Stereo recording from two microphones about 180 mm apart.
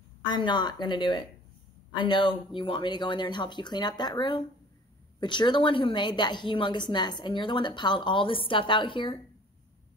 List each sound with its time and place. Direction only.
0.2 s a woman's voice: 25° left (ahead or behind)